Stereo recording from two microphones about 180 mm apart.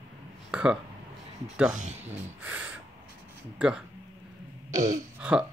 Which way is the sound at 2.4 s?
10° right (ahead or behind).